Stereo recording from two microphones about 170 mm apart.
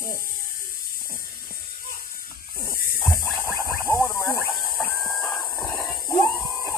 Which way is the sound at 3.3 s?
15° left (ahead or behind).